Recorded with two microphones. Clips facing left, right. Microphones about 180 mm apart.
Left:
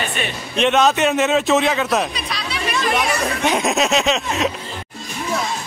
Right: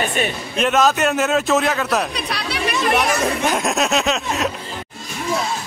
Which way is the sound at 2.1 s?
65° right (ahead or behind).